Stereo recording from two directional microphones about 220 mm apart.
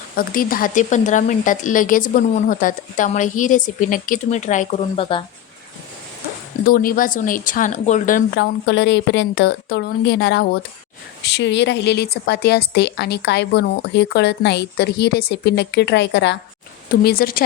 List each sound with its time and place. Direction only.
0.2 s a woman's voice: 40° left (ahead or behind); by 5.2 s 25° left (ahead or behind)
6.7 s a woman's voice: 40° left (ahead or behind)
8.6 s a woman's voice: 55° left (ahead or behind)